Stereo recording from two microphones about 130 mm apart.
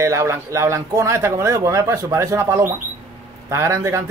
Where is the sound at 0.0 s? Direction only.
20° right (ahead or behind).